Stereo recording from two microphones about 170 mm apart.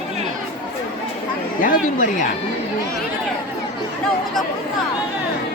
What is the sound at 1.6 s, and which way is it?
Speech, 55° left (ahead or behind).